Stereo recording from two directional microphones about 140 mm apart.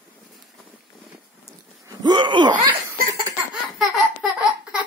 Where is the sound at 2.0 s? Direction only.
35° right (ahead or behind).